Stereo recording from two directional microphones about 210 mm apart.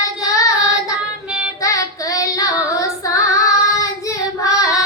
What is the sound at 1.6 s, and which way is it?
Child singing, 15° left (ahead or behind).